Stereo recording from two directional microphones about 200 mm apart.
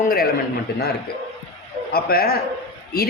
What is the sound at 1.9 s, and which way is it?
Speech, 50° left (ahead or behind).